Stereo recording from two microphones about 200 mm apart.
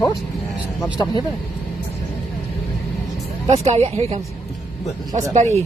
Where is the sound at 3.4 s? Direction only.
30° right (ahead or behind).